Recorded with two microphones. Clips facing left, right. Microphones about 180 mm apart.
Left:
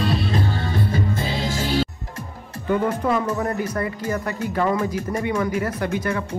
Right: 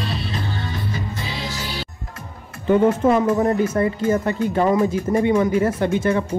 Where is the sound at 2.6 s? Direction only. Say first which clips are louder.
Right 6 dB; 25° right (ahead or behind).